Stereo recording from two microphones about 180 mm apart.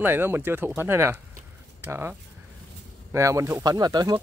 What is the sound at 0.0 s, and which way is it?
Speech, 10° right (ahead or behind).